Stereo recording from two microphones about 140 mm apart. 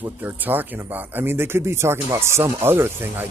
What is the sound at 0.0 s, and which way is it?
Speech, 15° right (ahead or behind).